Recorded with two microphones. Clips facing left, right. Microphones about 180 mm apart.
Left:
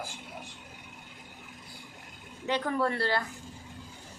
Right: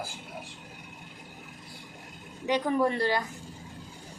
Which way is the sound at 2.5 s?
15° right (ahead or behind).